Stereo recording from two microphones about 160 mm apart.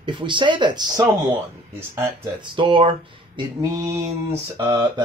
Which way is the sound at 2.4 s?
30° right (ahead or behind).